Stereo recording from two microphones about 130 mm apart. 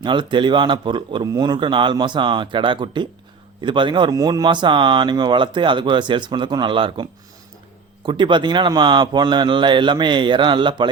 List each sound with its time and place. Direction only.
0.0 s speech: 40° right (ahead or behind)